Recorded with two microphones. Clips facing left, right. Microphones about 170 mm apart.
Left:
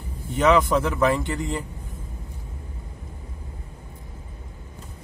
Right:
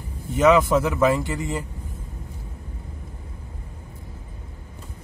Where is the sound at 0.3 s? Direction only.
Centre (ahead or behind).